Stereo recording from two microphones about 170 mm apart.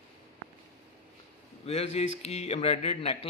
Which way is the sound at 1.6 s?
40° left (ahead or behind).